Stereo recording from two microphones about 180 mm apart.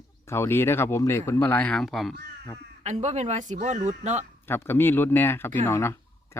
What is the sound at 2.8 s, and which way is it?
Speech, 40° right (ahead or behind).